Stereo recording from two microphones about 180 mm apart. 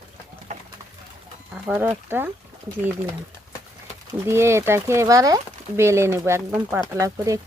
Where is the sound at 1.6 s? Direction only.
10° right (ahead or behind).